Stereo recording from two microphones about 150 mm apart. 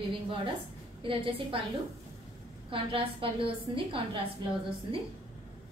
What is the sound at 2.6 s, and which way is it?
A woman's voice, 35° right (ahead or behind).